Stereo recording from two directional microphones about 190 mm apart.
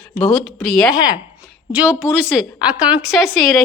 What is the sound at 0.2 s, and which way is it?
Speech, centre (ahead or behind).